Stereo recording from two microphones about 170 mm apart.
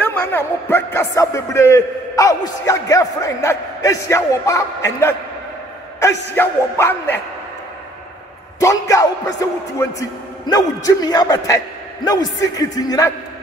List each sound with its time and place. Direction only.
0.0 s a man's voice: 10° left (ahead or behind)
6.3 s a man's voice: 15° left (ahead or behind)
8.5 s a man's voice: 20° left (ahead or behind)